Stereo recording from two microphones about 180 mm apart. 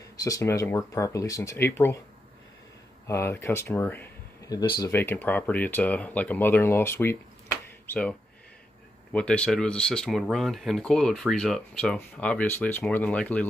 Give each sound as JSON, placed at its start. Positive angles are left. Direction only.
{"t": 0.2, "sound": "speech", "side_deg": 15}
{"t": 3.1, "sound": "speech", "side_deg": 15}
{"t": 4.6, "sound": "speech", "side_deg": 20}
{"t": 4.9, "sound": "speech", "side_deg": 10}